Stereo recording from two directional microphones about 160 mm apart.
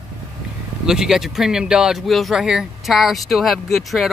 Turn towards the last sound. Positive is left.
turn(degrees=0)  # may be behind; listen again after turning